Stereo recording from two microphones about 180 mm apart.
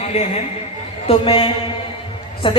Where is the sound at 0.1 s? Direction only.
35° left (ahead or behind).